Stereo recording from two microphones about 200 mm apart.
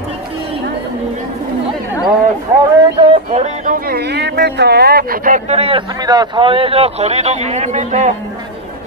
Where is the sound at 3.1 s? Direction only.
35° right (ahead or behind).